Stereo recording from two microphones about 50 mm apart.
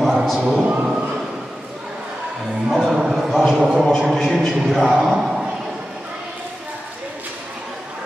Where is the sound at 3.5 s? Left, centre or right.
Centre.